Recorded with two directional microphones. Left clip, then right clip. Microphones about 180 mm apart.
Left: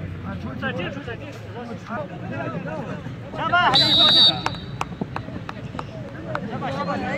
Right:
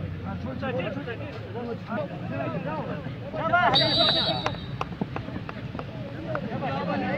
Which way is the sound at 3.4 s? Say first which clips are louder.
Left 4 dB; 35° right (ahead or behind).